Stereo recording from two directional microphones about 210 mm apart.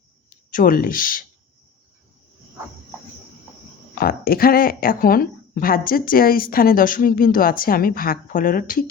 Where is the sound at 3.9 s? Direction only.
45° left (ahead or behind).